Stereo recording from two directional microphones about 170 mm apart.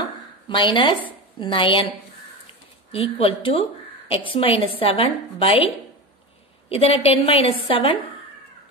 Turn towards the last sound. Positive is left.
turn(degrees=30)  # may be behind; listen again after turning